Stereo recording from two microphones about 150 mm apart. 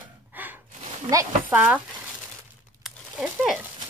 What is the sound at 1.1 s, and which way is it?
Speech, 25° right (ahead or behind).